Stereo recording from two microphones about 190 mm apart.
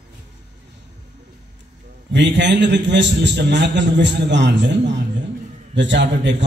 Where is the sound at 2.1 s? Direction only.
65° right (ahead or behind).